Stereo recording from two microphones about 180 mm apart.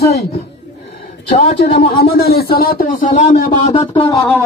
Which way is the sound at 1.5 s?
30° left (ahead or behind).